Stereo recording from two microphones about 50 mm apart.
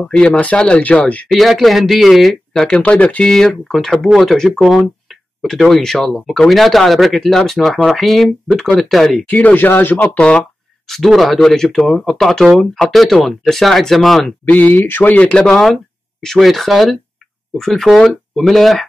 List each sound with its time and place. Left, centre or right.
0.1 s speech: centre; by 1.2 s left
1.3 s speech: centre
2.5 s speech: centre
2.8 s speech: left
3.3 s speech: centre
9.3 s speech: left
9.7 s speech: left
10.0 s speech: left
10.9 s speech: centre
14.4 s speech: left
15.4 s speech: centre